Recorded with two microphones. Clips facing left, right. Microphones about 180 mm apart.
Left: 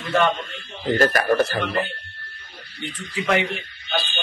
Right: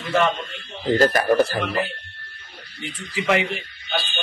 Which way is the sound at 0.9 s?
25° right (ahead or behind).